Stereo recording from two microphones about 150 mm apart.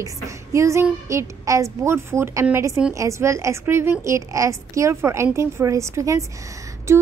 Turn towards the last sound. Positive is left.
turn(degrees=-20)  # may be behind; listen again after turning